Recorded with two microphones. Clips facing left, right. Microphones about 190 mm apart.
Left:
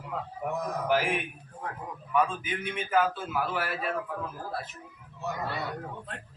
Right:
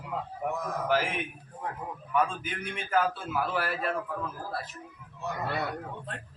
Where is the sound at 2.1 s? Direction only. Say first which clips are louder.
Left 1 dB; centre (ahead or behind).